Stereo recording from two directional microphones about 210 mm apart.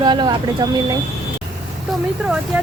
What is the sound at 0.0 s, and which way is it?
Speech, 20° right (ahead or behind).